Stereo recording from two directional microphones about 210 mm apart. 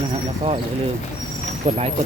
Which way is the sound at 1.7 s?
35° right (ahead or behind).